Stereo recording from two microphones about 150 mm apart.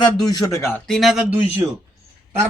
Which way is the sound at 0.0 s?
25° left (ahead or behind).